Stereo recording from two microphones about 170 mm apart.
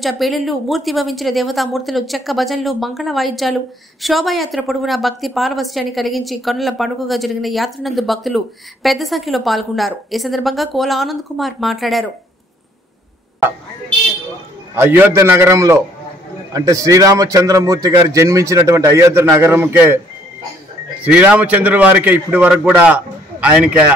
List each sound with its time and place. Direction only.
0.0 s speech: centre (ahead or behind)
14.8 s a man's voice: 15° right (ahead or behind)
21.0 s a man's voice: 10° right (ahead or behind)